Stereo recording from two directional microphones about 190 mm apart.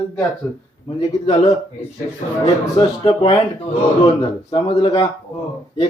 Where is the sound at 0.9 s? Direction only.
30° left (ahead or behind).